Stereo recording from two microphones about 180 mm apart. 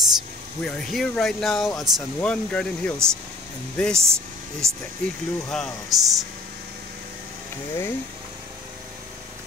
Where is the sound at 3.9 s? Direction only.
15° right (ahead or behind).